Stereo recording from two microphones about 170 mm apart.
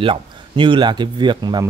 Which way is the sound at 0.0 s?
30° right (ahead or behind).